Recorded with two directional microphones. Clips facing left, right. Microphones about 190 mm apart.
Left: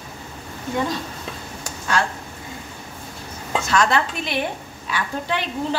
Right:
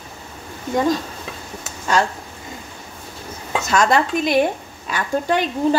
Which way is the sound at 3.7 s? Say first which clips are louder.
Right 3 dB; 45° right (ahead or behind).